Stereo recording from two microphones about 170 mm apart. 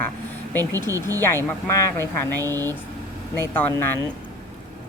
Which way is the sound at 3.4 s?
10° left (ahead or behind).